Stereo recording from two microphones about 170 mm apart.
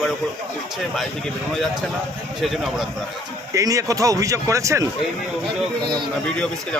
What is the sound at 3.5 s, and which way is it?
Speech, 20° right (ahead or behind).